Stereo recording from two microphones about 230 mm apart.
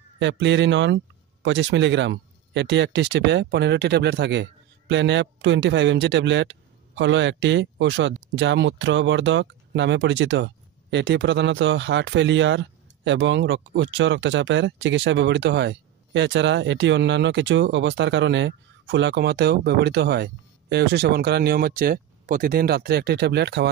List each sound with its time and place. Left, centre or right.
0.2 s speech: right